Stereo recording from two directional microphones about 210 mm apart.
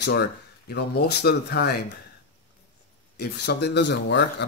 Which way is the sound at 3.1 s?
55° left (ahead or behind).